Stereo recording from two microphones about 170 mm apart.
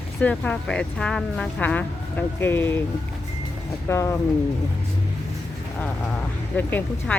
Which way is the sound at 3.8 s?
15° left (ahead or behind).